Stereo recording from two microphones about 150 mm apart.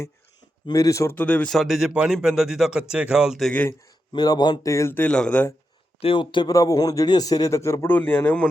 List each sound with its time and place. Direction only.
0.7 s speech: 25° left (ahead or behind); by 3.7 s 5° left (ahead or behind)
3.7 s speech: 25° left (ahead or behind); by 5.5 s 10° left (ahead or behind)
6.0 s speech: 35° left (ahead or behind); by 8.4 s 10° left (ahead or behind)